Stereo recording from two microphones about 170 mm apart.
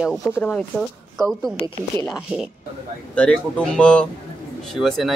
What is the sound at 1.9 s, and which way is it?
A man's voice, 15° left (ahead or behind).